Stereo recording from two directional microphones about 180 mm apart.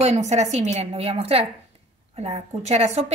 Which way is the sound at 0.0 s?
40° right (ahead or behind).